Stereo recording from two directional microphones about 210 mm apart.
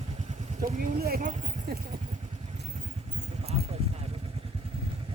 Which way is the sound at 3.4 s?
30° right (ahead or behind).